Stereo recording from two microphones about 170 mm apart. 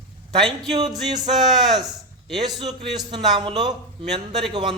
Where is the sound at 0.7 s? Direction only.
35° right (ahead or behind).